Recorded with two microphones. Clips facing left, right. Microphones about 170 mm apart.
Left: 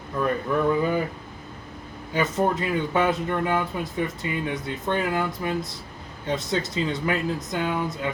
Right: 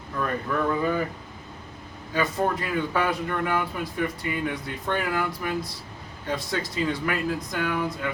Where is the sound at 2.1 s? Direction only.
20° left (ahead or behind).